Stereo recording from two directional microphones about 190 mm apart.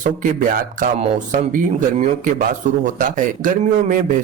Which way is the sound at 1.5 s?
45° right (ahead or behind).